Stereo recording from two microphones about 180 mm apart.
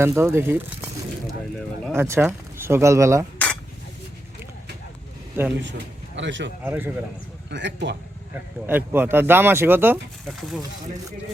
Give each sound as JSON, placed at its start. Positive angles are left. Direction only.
{"t": 0.0, "sound": "speech", "side_deg": -15}
{"t": 1.9, "sound": "speech", "side_deg": -15}
{"t": 3.3, "sound": "dishes", "side_deg": 10}
{"t": 5.6, "sound": "a man's voice", "side_deg": -80}
{"t": 6.7, "sound": "speech", "side_deg": -10}
{"t": 7.5, "sound": "speech", "side_deg": -75}
{"t": 8.6, "sound": "speech", "side_deg": -10}